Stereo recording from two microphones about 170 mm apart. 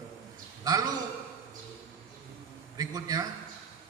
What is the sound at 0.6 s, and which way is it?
Speech, 20° right (ahead or behind).